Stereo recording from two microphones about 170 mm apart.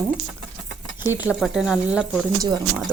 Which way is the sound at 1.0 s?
10° right (ahead or behind).